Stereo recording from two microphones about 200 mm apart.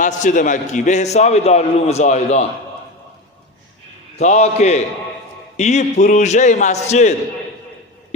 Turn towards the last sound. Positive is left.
turn(degrees=35)  # may be behind; listen again after turning